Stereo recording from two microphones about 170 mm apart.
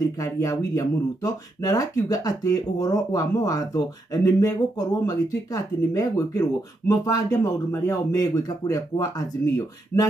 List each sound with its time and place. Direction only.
0.2 s speech: 20° left (ahead or behind)